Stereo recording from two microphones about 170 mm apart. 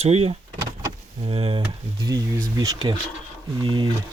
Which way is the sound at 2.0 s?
20° right (ahead or behind).